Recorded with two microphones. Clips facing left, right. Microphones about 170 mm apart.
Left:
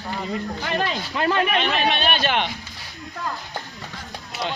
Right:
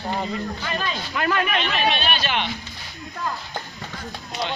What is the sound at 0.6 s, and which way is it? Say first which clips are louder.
Speech: left 4 dB; 70° left (ahead or behind).